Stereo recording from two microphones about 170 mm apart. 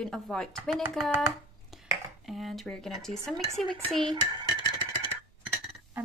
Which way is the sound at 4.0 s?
25° right (ahead or behind).